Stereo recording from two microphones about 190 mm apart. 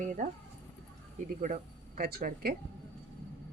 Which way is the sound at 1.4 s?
45° right (ahead or behind).